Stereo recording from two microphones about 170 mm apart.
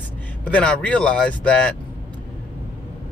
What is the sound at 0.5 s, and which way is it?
Speech, 5° left (ahead or behind).